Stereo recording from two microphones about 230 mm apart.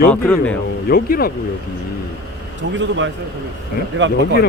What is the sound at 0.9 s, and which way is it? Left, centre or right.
Speech, left.